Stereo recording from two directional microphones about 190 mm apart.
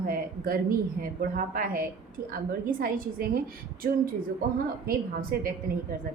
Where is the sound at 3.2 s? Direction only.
50° right (ahead or behind).